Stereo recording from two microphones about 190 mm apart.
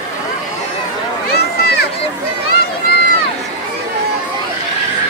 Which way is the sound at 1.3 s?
55° left (ahead or behind).